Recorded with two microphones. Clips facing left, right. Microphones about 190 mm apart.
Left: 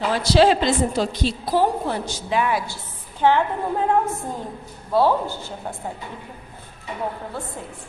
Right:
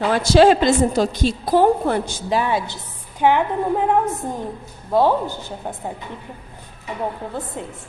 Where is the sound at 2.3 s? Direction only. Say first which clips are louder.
Right 2 dB; 30° right (ahead or behind).